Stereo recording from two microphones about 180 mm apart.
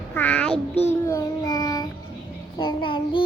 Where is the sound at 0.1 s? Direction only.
10° left (ahead or behind).